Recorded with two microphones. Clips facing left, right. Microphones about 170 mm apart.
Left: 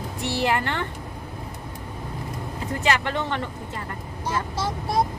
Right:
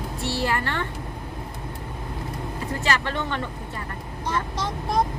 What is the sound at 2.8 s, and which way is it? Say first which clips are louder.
Speech: left 2 dB; 20° left (ahead or behind).